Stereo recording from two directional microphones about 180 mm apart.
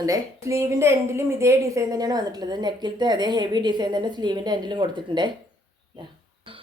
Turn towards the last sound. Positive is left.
turn(degrees=-25)  # may be behind; listen again after turning